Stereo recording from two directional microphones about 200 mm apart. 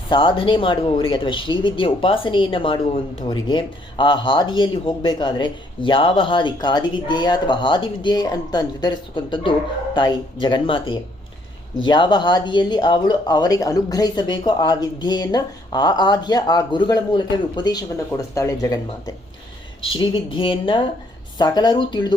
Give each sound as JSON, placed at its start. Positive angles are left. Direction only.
{"t": 0.1, "sound": "speech", "side_deg": 25}